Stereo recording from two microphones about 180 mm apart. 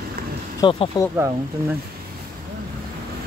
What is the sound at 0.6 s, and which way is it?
Speech, 30° left (ahead or behind).